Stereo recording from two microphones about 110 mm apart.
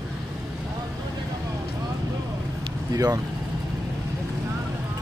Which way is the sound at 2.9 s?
35° right (ahead or behind).